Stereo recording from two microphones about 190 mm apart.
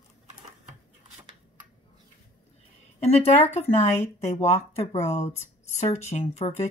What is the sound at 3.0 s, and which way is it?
Speech, 35° left (ahead or behind).